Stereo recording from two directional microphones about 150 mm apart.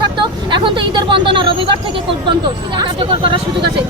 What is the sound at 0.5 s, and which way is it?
Speech, 30° right (ahead or behind).